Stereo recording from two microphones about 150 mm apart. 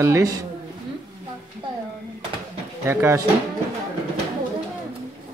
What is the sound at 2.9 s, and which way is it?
Speech, 15° right (ahead or behind).